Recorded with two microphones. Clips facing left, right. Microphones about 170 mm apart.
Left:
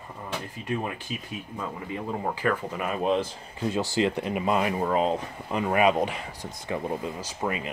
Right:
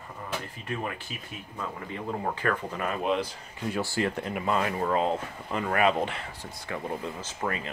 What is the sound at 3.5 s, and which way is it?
Speech, 20° left (ahead or behind).